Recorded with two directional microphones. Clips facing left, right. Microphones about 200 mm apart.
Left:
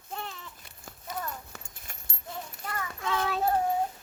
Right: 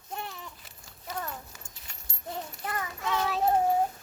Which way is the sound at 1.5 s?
55° left (ahead or behind).